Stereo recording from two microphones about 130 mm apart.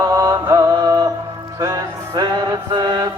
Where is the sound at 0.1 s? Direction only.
25° right (ahead or behind).